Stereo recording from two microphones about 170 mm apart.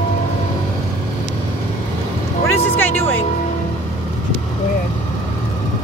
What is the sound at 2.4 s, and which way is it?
Speech, 10° left (ahead or behind).